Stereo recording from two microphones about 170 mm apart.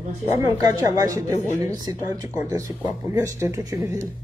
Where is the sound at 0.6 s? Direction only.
20° right (ahead or behind).